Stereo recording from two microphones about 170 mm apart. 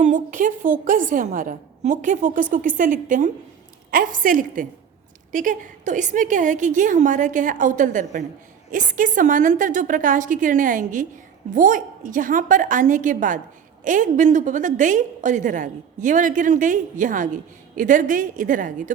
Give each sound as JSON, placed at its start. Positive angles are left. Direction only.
{"t": 0.0, "sound": "a woman's voice", "side_deg": -50}